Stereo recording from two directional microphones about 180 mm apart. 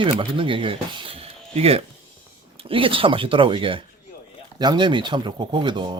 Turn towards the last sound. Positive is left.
turn(degrees=-25)  # may be behind; listen again after turning